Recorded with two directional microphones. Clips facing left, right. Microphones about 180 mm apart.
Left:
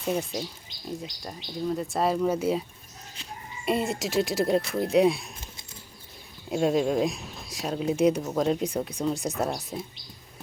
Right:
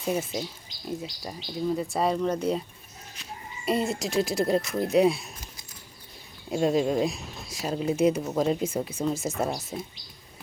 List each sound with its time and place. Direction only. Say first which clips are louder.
0.0 s speech: even; centre (ahead or behind)
3.7 s speech: even; centre (ahead or behind)
6.5 s speech: even; centre (ahead or behind)